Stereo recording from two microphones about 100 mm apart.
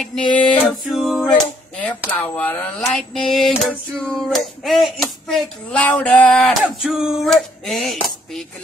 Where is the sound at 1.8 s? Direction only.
15° left (ahead or behind).